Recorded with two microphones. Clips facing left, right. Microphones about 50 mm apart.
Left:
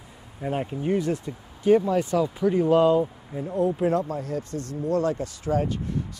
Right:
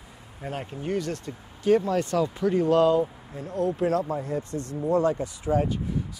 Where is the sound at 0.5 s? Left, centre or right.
Centre.